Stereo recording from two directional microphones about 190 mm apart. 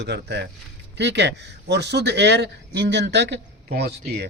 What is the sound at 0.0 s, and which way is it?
A man's voice, 65° right (ahead or behind).